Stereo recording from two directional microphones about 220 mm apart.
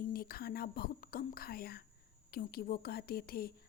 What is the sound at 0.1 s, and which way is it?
A woman's voice, 45° left (ahead or behind).